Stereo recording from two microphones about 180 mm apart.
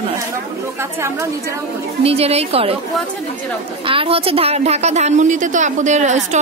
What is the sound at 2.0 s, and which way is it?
Speech, 35° right (ahead or behind).